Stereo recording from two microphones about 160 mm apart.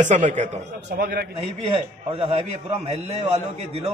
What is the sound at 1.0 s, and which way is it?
Speech, 75° right (ahead or behind).